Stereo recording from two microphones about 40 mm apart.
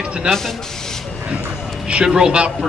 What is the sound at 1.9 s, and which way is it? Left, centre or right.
Speech, right.